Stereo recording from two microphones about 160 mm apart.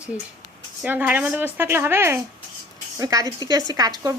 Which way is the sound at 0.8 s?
10° right (ahead or behind).